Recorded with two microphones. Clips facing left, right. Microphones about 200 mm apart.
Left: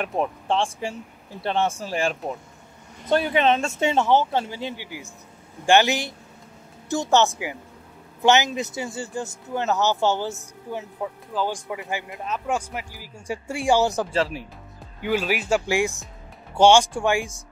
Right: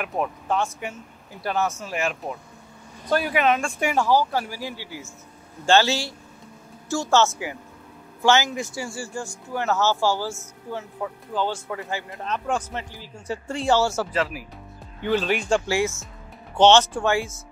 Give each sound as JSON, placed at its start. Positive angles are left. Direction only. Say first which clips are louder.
{"t": 0.2, "sound": "a man's voice", "louder": "left 1 dB", "side_deg": 30}
{"t": 14.1, "sound": "speech", "louder": "left 2 dB", "side_deg": 30}
{"t": 15.0, "sound": "a man's voice", "louder": "right 1 dB", "side_deg": 10}